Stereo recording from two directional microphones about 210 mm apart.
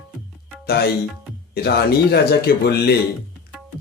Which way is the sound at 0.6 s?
50° left (ahead or behind).